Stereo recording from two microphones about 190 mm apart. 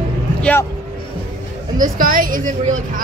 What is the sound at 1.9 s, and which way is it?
Speech, 45° right (ahead or behind).